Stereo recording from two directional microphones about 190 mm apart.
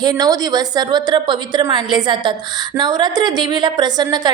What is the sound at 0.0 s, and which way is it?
A woman's voice, 20° right (ahead or behind).